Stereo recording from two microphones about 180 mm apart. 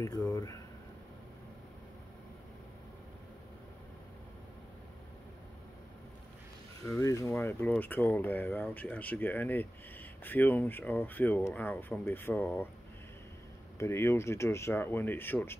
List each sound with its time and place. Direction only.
0.0 s speech: 20° left (ahead or behind)
6.9 s speech: 15° left (ahead or behind)
13.7 s speech: 15° left (ahead or behind)